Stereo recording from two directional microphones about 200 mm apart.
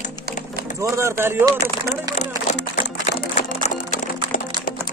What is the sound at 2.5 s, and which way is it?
Speech, 35° left (ahead or behind).